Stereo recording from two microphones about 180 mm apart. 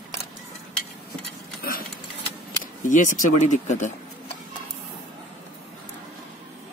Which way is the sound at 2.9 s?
45° left (ahead or behind).